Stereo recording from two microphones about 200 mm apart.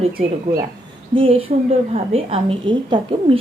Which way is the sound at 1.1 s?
25° right (ahead or behind).